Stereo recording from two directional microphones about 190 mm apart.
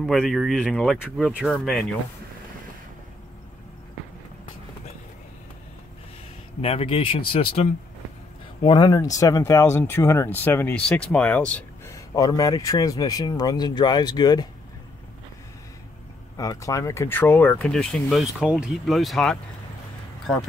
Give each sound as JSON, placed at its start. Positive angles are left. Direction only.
{"t": 0.0, "sound": "speech", "side_deg": 0}
{"t": 6.6, "sound": "speech", "side_deg": 30}
{"t": 16.3, "sound": "speech", "side_deg": 20}